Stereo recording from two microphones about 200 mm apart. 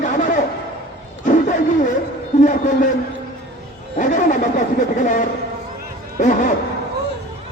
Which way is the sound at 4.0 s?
40° left (ahead or behind).